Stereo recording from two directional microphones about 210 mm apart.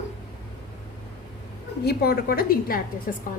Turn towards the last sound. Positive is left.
turn(degrees=45)  # may be behind; listen again after turning